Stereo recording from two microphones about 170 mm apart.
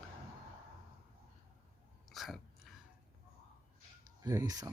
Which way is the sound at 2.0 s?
Centre (ahead or behind).